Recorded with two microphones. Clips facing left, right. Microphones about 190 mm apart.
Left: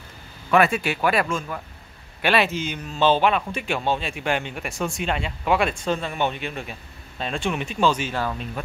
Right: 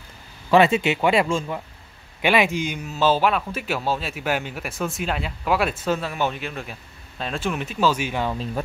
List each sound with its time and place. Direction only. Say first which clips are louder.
0.5 s speech: right 3 dB; 25° right (ahead or behind)
8.3 s speech: right 3 dB; 35° right (ahead or behind)